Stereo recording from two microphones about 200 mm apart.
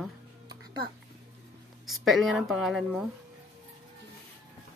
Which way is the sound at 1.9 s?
Centre (ahead or behind).